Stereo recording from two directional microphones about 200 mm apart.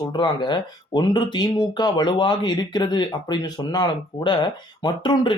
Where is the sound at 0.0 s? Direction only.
20° left (ahead or behind).